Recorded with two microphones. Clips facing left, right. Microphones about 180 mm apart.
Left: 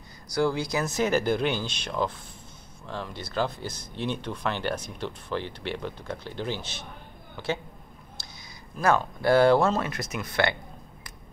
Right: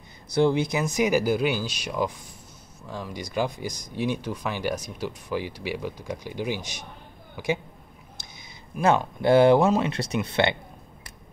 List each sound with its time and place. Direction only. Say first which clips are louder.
0.3 s speech: right 4 dB; 20° right (ahead or behind)
8.8 s speech: right 2 dB; 20° right (ahead or behind)